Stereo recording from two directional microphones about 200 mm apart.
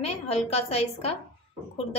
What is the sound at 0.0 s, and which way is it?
A woman's voice, 30° left (ahead or behind).